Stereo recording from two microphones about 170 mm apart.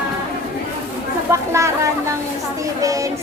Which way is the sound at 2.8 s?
20° right (ahead or behind).